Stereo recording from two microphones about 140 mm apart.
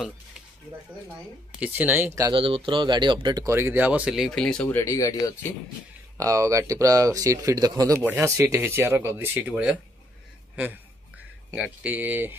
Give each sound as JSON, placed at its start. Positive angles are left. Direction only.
{"t": 1.5, "sound": "speech", "side_deg": -10}
{"t": 2.3, "sound": "speech", "side_deg": -40}
{"t": 3.4, "sound": "speech", "side_deg": -15}
{"t": 4.6, "sound": "speech", "side_deg": 20}
{"t": 6.1, "sound": "a man's voice", "side_deg": -25}